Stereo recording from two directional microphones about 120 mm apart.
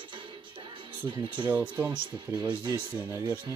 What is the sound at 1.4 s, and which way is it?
Speech, 15° right (ahead or behind).